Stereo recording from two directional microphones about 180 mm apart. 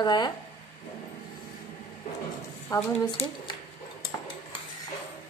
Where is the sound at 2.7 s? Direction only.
20° left (ahead or behind).